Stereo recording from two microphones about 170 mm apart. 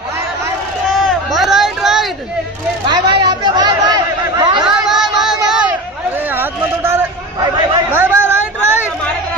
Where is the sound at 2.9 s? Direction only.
25° right (ahead or behind).